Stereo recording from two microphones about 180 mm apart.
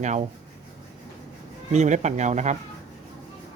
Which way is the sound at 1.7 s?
40° right (ahead or behind).